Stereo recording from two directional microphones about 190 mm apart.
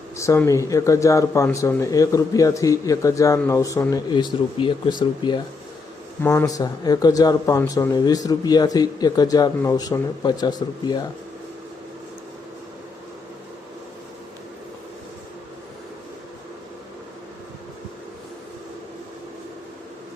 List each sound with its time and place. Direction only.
0.2 s speech: 15° left (ahead or behind)